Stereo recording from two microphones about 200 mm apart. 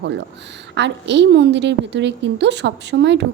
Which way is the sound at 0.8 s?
60° right (ahead or behind).